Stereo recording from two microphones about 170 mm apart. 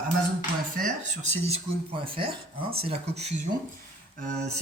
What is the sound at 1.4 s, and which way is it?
Speech, 35° right (ahead or behind).